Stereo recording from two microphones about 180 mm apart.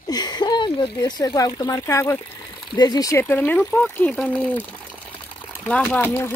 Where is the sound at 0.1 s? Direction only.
25° left (ahead or behind).